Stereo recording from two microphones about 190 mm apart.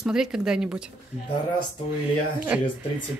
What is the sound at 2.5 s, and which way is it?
Speech, 5° right (ahead or behind).